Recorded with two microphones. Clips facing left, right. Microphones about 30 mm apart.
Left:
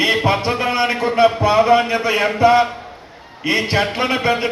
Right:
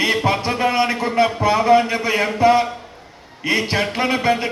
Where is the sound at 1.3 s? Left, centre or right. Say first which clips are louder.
Left 1 dB; left.